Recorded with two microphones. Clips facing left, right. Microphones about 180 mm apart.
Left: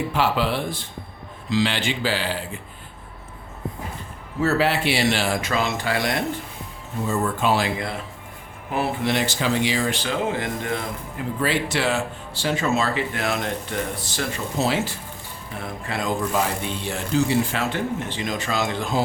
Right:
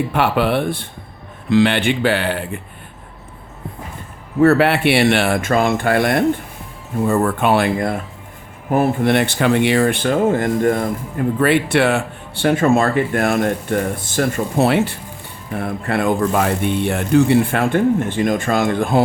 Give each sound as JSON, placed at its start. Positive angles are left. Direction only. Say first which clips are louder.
{"t": 0.1, "sound": "speech", "louder": "right 5 dB", "side_deg": -60}
{"t": 4.4, "sound": "speech", "louder": "right 8 dB", "side_deg": -60}